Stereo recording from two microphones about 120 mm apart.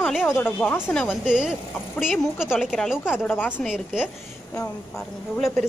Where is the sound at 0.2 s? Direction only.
15° left (ahead or behind).